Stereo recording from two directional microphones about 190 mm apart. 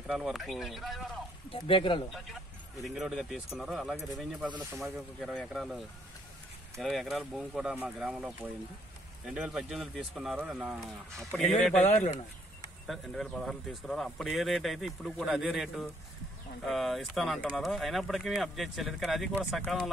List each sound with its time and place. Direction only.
0.1 s speech: centre (ahead or behind)
1.5 s speech: 25° left (ahead or behind)
2.1 s speech: centre (ahead or behind)
11.8 s speech: 40° left (ahead or behind)
12.8 s speech: centre (ahead or behind)